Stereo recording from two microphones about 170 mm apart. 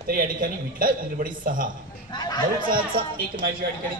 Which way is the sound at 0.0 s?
55° right (ahead or behind).